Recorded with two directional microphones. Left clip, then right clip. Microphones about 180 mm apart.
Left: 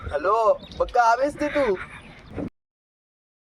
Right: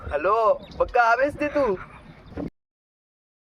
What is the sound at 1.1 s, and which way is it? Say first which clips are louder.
Speech: right 1 dB; centre (ahead or behind).